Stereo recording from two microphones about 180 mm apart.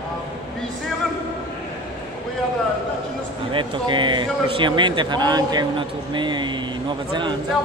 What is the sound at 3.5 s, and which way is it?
Speech, 25° right (ahead or behind).